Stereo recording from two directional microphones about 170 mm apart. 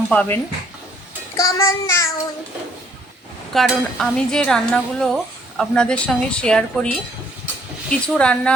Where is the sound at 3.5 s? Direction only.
Centre (ahead or behind).